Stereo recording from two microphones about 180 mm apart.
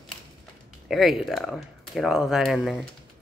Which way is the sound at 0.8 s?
Centre (ahead or behind).